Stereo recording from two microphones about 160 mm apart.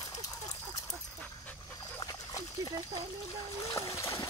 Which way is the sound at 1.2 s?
10° left (ahead or behind).